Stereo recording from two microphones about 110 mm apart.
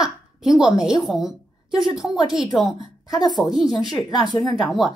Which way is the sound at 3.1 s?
40° left (ahead or behind).